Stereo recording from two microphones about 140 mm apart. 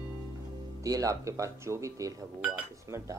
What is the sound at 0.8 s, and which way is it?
Speech, 25° right (ahead or behind).